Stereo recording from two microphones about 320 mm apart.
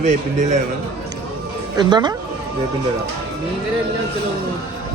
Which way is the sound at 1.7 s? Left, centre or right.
Centre.